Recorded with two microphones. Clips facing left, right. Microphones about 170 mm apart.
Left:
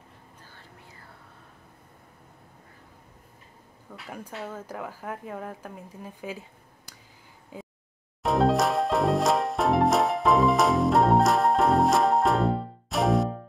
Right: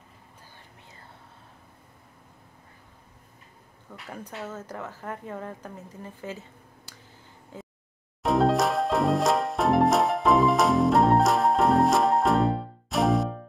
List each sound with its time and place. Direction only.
3.9 s speech: 5° left (ahead or behind)
7.5 s a sound: 10° left (ahead or behind)
8.2 s music: centre (ahead or behind)